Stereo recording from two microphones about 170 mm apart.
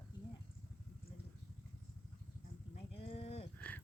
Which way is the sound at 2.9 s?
35° left (ahead or behind).